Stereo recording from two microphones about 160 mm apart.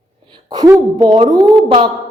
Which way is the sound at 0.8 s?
25° right (ahead or behind).